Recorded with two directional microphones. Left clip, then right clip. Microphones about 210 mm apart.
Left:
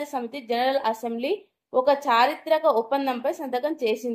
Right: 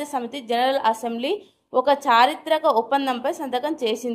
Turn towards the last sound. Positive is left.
turn(degrees=-25)  # may be behind; listen again after turning